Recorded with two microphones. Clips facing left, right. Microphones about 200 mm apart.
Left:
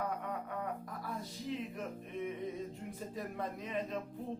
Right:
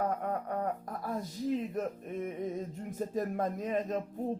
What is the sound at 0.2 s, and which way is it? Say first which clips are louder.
Music: right 6 dB; 45° right (ahead or behind).